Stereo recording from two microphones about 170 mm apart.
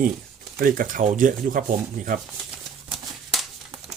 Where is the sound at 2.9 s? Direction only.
Centre (ahead or behind).